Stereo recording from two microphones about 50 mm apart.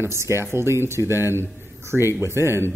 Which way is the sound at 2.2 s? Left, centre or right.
Right.